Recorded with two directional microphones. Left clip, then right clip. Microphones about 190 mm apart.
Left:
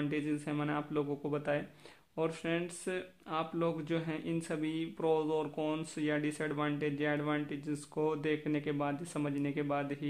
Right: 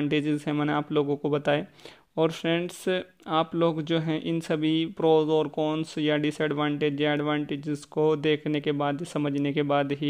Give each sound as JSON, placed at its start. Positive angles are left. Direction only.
{"t": 0.0, "sound": "a man's voice", "side_deg": -45}